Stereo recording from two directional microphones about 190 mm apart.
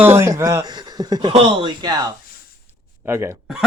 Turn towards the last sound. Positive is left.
turn(degrees=-15)  # may be behind; listen again after turning